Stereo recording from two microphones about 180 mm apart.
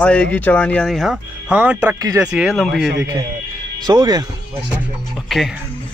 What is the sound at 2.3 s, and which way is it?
Speech, centre (ahead or behind).